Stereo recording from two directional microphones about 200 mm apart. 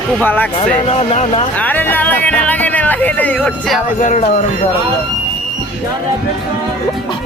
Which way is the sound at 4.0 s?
35° left (ahead or behind).